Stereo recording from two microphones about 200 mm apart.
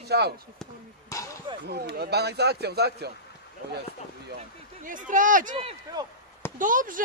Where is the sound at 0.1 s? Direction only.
55° right (ahead or behind).